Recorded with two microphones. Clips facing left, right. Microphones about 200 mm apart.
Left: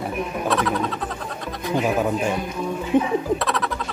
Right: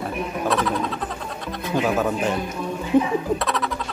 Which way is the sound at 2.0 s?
15° left (ahead or behind).